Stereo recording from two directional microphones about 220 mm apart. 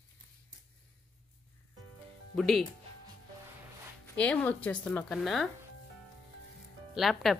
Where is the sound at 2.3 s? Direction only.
Centre (ahead or behind).